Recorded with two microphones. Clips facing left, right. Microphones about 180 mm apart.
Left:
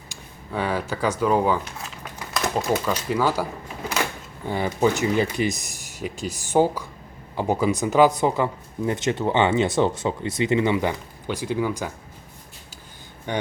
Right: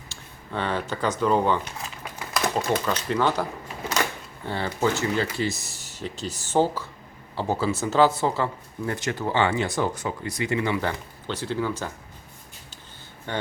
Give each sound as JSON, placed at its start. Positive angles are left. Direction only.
{"t": 0.1, "sound": "speech", "side_deg": 10}
{"t": 4.4, "sound": "speech", "side_deg": 15}
{"t": 13.3, "sound": "speech", "side_deg": 15}